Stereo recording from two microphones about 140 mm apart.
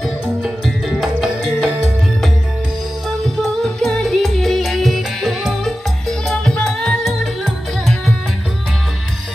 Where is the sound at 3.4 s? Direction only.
5° left (ahead or behind).